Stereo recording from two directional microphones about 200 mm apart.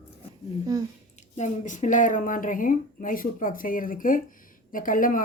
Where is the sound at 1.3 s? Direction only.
35° left (ahead or behind).